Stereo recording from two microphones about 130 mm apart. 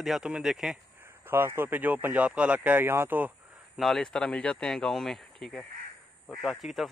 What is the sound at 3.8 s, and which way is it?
Speech, 5° left (ahead or behind).